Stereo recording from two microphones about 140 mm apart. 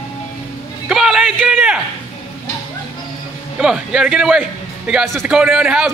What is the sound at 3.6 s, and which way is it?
A man's voice, 5° right (ahead or behind).